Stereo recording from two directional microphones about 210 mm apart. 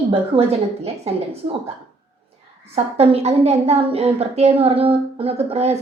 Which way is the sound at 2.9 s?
30° right (ahead or behind).